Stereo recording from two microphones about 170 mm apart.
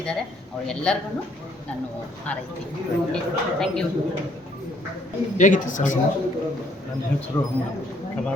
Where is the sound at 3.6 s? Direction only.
5° left (ahead or behind).